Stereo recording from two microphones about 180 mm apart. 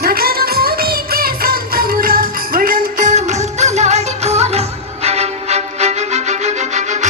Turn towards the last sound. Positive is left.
turn(degrees=-40)  # may be behind; listen again after turning